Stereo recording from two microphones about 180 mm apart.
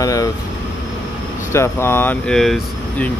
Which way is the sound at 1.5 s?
15° left (ahead or behind).